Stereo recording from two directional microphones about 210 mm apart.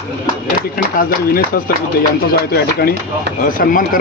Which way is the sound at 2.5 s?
50° left (ahead or behind).